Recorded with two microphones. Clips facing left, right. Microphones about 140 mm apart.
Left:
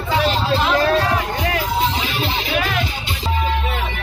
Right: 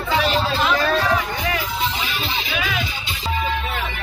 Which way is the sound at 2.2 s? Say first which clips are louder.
Left 6 dB; 60° left (ahead or behind).